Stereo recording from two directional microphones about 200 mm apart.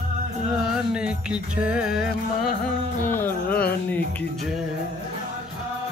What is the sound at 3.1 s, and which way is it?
Music, 10° left (ahead or behind).